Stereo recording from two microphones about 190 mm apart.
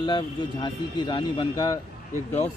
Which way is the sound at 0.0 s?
25° left (ahead or behind).